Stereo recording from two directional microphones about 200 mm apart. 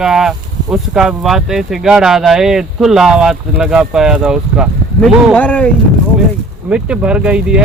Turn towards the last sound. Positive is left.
turn(degrees=-5)  # may be behind; listen again after turning